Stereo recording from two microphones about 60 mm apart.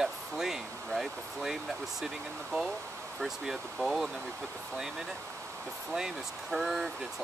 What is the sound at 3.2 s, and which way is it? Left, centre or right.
Speech, centre.